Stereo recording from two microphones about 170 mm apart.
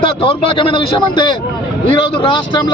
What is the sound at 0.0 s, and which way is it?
A man's voice, 30° left (ahead or behind).